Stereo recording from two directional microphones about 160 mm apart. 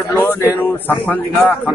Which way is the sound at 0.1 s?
15° left (ahead or behind).